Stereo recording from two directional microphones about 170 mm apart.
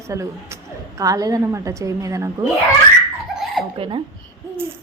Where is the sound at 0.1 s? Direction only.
20° right (ahead or behind).